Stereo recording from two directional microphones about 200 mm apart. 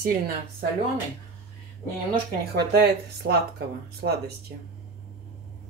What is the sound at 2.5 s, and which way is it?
Speech, 55° right (ahead or behind).